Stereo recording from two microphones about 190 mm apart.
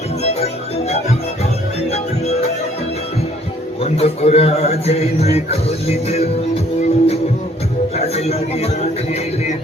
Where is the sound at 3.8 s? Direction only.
30° left (ahead or behind).